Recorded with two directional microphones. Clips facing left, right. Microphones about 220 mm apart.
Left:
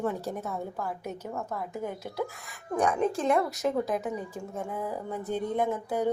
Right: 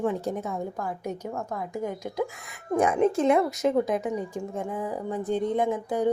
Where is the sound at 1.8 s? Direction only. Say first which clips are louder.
Right 5 dB; 15° right (ahead or behind).